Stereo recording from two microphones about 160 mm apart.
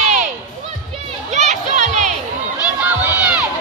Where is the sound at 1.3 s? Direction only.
45° right (ahead or behind).